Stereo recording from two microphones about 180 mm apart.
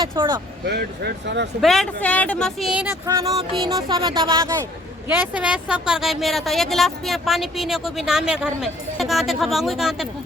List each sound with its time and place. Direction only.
0.0 s speech: 25° right (ahead or behind)
0.6 s speech: 65° right (ahead or behind)
1.6 s a woman's voice: centre (ahead or behind)
3.1 s speech: 20° right (ahead or behind)
5.0 s a woman's voice: 10° right (ahead or behind)